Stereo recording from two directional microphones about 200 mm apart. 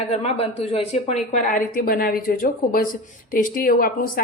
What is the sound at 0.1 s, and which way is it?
A woman's voice, 30° left (ahead or behind).